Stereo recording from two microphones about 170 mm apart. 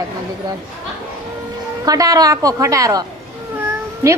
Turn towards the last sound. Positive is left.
turn(degrees=-15)  # may be behind; listen again after turning